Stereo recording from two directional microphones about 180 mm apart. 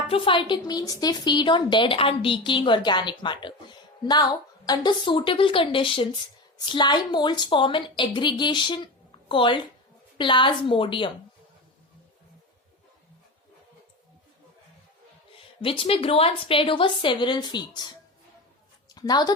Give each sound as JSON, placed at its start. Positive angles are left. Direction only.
{"t": 0.1, "sound": "a woman's voice", "side_deg": 30}
{"t": 15.6, "sound": "a woman's voice", "side_deg": 30}
{"t": 18.9, "sound": "a sound", "side_deg": 20}